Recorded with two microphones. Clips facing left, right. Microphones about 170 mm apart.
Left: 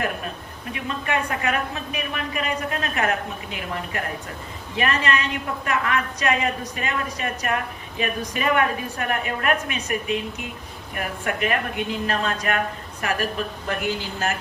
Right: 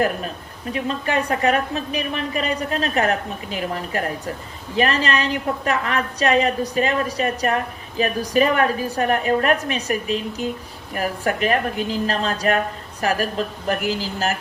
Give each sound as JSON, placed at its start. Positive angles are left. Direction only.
{"t": 0.7, "sound": "a woman's voice", "side_deg": -35}